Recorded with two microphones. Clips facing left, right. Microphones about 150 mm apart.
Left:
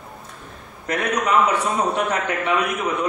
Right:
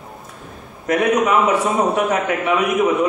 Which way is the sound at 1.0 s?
Centre (ahead or behind).